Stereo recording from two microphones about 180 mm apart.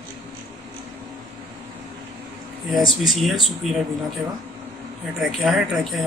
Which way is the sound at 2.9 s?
Centre (ahead or behind).